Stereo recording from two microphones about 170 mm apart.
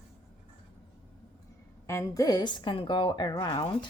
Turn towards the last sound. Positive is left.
turn(degrees=25)  # may be behind; listen again after turning